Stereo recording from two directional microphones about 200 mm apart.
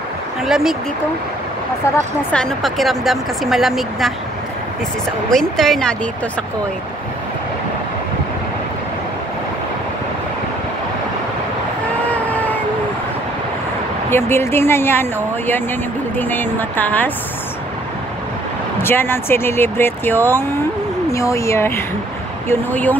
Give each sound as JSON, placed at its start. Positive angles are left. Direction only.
{"t": 0.4, "sound": "speech", "side_deg": 0}
{"t": 2.3, "sound": "speech", "side_deg": 0}
{"t": 5.3, "sound": "speech", "side_deg": 0}
{"t": 12.1, "sound": "vehicle", "side_deg": 10}
{"t": 14.1, "sound": "speech", "side_deg": 10}
{"t": 18.8, "sound": "speech", "side_deg": 10}